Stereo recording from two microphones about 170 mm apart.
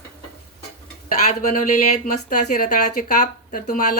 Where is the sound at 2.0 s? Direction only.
50° left (ahead or behind).